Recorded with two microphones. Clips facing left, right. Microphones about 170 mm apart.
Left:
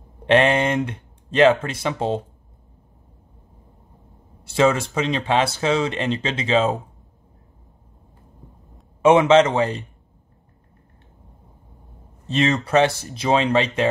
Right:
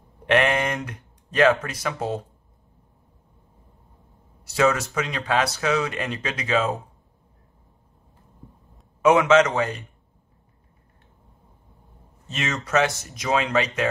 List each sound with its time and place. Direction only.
0.3 s speech: 25° left (ahead or behind)
4.5 s speech: 25° left (ahead or behind)
9.0 s speech: 25° left (ahead or behind)
12.3 s speech: 30° left (ahead or behind)